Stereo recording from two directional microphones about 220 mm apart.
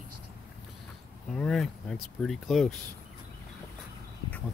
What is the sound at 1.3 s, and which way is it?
Speech, centre (ahead or behind).